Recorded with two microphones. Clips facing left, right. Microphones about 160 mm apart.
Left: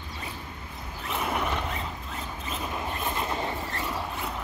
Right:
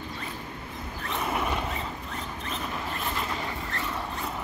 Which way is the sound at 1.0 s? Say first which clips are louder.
Even; centre (ahead or behind).